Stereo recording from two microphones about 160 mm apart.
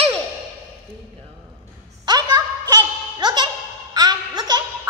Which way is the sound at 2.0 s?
25° right (ahead or behind).